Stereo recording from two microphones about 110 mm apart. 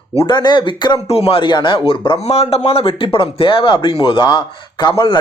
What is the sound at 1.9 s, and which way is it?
Speech, 60° left (ahead or behind).